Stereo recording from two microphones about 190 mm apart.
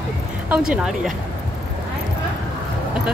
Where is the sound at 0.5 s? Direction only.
5° right (ahead or behind).